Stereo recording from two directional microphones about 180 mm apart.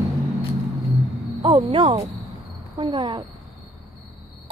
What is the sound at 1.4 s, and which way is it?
Speech, 30° right (ahead or behind).